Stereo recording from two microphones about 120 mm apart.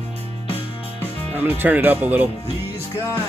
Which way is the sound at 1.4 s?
15° right (ahead or behind).